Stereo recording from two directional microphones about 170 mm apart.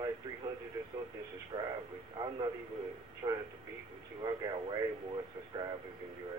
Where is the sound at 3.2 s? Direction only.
25° right (ahead or behind).